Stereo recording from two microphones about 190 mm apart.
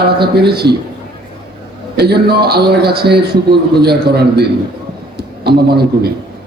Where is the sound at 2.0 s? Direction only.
55° right (ahead or behind).